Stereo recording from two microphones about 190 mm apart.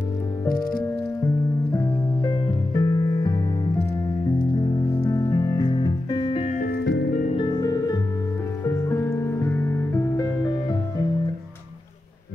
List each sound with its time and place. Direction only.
1.2 s music: 15° left (ahead or behind)
6.4 s music: 45° left (ahead or behind)
7.3 s music: 25° left (ahead or behind)